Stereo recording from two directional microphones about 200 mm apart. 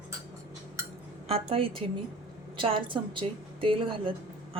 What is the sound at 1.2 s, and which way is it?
Speech, 30° right (ahead or behind).